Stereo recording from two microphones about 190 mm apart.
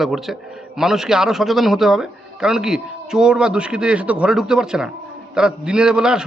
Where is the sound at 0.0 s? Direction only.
Centre (ahead or behind).